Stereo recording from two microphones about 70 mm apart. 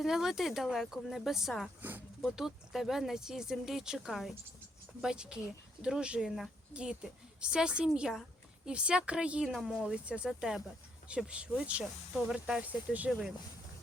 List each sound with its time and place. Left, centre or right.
0.0 s speech: centre
9.5 s speech: centre
9.8 s speech: centre
10.2 s speech: centre
11.1 s speech: centre
12.6 s speech: right
13.1 s speech: centre